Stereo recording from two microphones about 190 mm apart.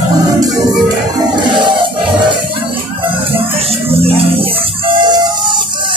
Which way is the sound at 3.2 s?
30° right (ahead or behind).